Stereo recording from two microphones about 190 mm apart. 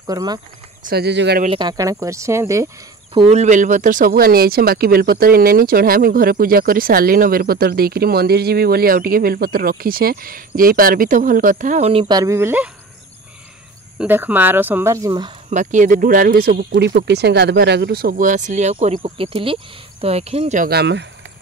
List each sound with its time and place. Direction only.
0.0 s speech: 20° right (ahead or behind)
0.8 s speech: 60° right (ahead or behind)
1.4 s speech: 25° right (ahead or behind)
3.2 s speech: 35° right (ahead or behind)
11.9 s speech: 25° right (ahead or behind)
13.9 s speech: 10° right (ahead or behind)
15.5 s speech: 40° right (ahead or behind)
16.7 s speech: 65° right (ahead or behind); by 20.7 s 40° right (ahead or behind)
20.7 s speech: 65° right (ahead or behind)